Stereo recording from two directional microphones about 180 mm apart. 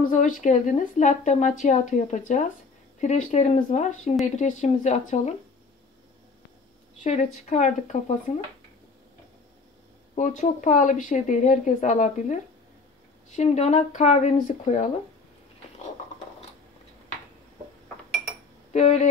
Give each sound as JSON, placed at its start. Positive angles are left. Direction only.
{"t": 0.1, "sound": "speech", "side_deg": 45}
{"t": 7.0, "sound": "speech", "side_deg": 40}
{"t": 10.1, "sound": "speech", "side_deg": 40}
{"t": 18.7, "sound": "speech", "side_deg": 40}